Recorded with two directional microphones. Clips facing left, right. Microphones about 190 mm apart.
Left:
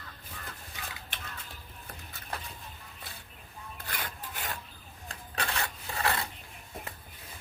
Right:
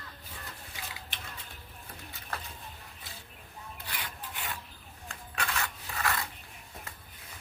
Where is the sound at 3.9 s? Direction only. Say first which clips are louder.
Left 3 dB; 45° left (ahead or behind).